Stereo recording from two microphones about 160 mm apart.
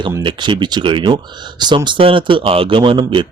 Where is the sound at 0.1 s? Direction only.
30° right (ahead or behind).